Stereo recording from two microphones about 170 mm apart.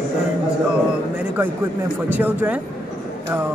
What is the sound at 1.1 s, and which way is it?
Speech, 10° right (ahead or behind).